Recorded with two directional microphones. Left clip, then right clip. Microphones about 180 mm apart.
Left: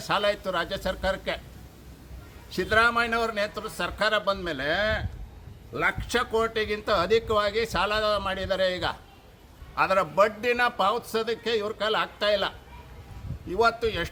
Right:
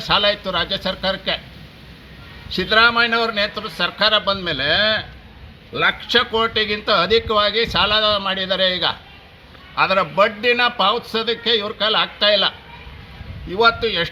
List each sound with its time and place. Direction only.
0.0 s a man's voice: 15° left (ahead or behind)
2.5 s a man's voice: 15° left (ahead or behind)